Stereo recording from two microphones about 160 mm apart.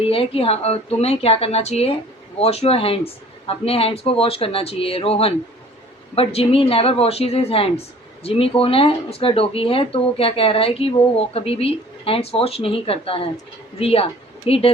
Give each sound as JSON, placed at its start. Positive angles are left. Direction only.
{"t": 0.0, "sound": "a woman's voice", "side_deg": 35}